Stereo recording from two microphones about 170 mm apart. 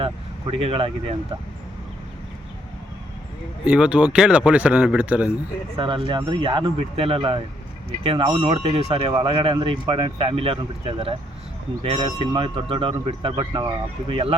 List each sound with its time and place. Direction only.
0.0 s vehicle: 30° right (ahead or behind)
3.7 s a man's voice: 5° right (ahead or behind)
5.7 s speech: 30° right (ahead or behind)